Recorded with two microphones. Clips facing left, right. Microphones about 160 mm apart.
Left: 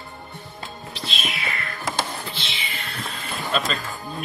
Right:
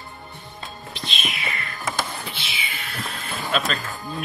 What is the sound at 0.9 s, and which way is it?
Music, centre (ahead or behind).